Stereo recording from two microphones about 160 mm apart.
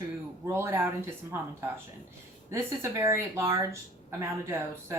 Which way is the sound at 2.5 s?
15° right (ahead or behind).